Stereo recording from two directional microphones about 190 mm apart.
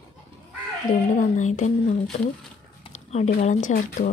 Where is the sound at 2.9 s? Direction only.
35° left (ahead or behind).